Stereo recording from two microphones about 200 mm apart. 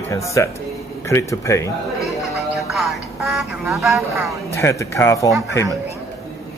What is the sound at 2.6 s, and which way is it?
Music, centre (ahead or behind).